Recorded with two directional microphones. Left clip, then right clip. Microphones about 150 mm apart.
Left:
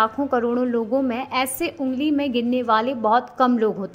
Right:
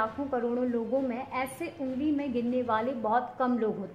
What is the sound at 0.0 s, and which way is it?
A woman's voice, 35° left (ahead or behind).